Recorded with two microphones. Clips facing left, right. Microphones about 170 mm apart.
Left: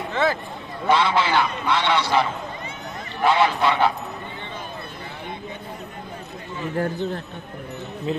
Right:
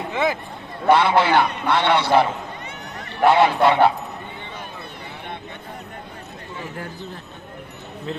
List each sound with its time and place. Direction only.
0.1 s a sound: 15° right (ahead or behind)
0.8 s a man's voice: 60° right (ahead or behind)
8.1 s a man's voice: 10° left (ahead or behind)